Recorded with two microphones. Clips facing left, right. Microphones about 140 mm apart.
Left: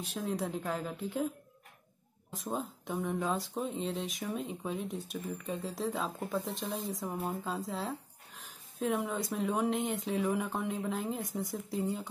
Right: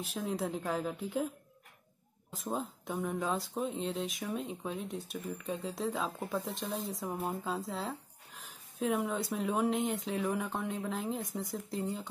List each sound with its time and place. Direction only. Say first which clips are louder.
0.0 s speech: even; centre (ahead or behind)
2.3 s speech: even; centre (ahead or behind)